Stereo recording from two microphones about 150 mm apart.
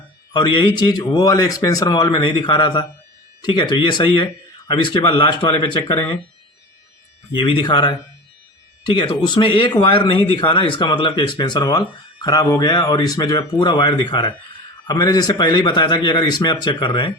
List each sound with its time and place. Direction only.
0.3 s speech: 30° left (ahead or behind)
7.3 s speech: 30° left (ahead or behind)